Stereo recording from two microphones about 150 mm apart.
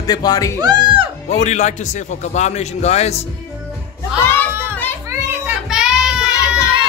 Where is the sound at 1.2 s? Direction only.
50° left (ahead or behind).